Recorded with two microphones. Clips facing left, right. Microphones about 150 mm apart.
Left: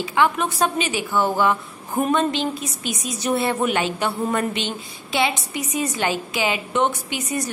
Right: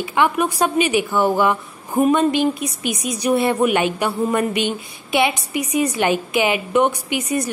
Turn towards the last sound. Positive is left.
turn(degrees=-20)  # may be behind; listen again after turning